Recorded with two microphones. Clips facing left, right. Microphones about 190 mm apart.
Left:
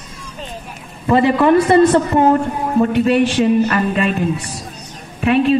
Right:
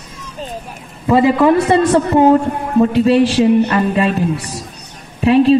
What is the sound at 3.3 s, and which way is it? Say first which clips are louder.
A woman's voice: right 2 dB; 20° right (ahead or behind).